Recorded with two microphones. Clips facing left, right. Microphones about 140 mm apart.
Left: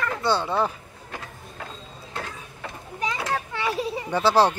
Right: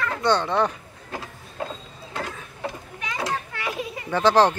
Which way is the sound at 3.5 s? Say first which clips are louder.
Left 4 dB; 30° left (ahead or behind).